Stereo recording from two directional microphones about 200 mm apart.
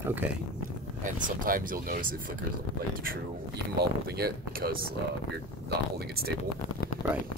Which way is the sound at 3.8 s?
50° right (ahead or behind).